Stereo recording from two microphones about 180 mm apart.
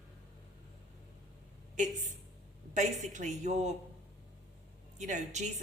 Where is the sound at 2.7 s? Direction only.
40° right (ahead or behind).